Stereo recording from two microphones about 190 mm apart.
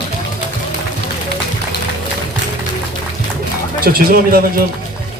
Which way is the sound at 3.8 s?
50° right (ahead or behind).